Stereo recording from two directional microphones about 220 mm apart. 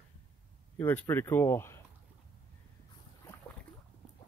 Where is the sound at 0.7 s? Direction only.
10° left (ahead or behind).